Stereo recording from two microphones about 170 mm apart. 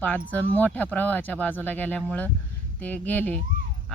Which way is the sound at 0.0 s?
10° left (ahead or behind).